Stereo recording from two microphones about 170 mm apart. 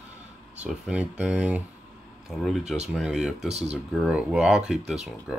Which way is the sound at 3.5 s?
40° right (ahead or behind).